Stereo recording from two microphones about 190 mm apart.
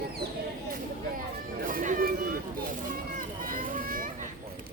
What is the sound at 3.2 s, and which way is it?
Children playing, 45° right (ahead or behind).